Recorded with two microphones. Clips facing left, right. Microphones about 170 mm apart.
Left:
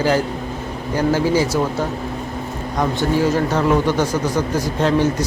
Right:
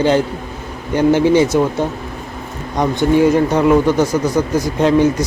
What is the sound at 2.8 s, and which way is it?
Speech, 15° right (ahead or behind).